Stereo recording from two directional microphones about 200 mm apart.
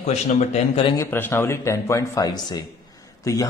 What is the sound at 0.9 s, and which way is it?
Speech, 10° left (ahead or behind).